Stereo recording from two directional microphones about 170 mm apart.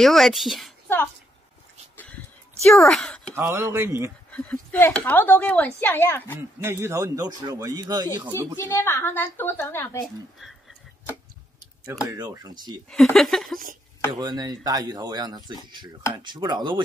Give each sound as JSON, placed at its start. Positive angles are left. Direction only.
{"t": 0.0, "sound": "a woman's voice", "side_deg": 0}
{"t": 0.8, "sound": "throat clearing", "side_deg": 10}
{"t": 2.6, "sound": "speech", "side_deg": 0}
{"t": 3.3, "sound": "speech", "side_deg": -15}
{"t": 4.3, "sound": "speech", "side_deg": 5}
{"t": 6.6, "sound": "a man's voice", "side_deg": -15}
{"t": 8.5, "sound": "speech", "side_deg": 15}
{"t": 12.1, "sound": "a man's voice", "side_deg": -25}
{"t": 12.9, "sound": "a woman's voice", "side_deg": 0}
{"t": 14.1, "sound": "a man's voice", "side_deg": -25}